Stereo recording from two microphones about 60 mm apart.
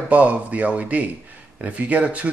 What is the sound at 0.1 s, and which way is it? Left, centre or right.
A man's voice, right.